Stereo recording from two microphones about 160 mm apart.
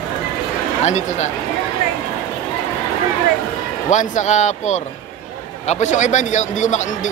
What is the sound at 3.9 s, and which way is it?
A man's voice, 50° left (ahead or behind).